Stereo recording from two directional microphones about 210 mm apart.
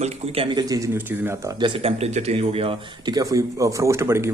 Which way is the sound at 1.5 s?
25° right (ahead or behind).